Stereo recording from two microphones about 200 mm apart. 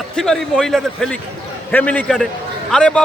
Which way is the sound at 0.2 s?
5° left (ahead or behind).